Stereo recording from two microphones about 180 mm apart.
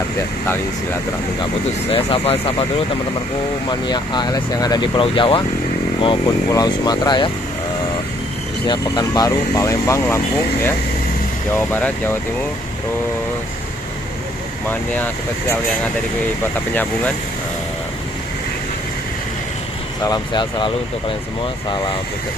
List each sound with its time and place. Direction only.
1.9 s speech: 30° left (ahead or behind)
3.6 s speech: 25° left (ahead or behind)
8.6 s speech: 20° left (ahead or behind)
20.0 s speech: 25° left (ahead or behind)